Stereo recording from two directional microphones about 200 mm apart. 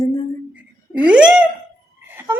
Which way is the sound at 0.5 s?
5° right (ahead or behind).